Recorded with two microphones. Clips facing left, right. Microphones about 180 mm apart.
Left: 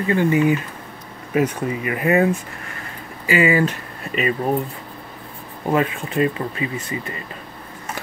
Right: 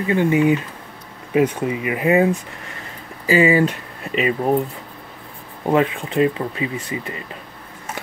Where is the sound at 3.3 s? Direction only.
25° right (ahead or behind).